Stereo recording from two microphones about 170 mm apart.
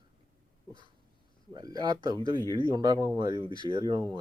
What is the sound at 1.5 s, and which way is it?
Speech, 25° right (ahead or behind).